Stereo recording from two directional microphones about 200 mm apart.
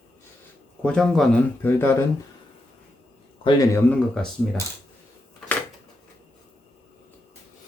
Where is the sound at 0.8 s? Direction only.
5° left (ahead or behind).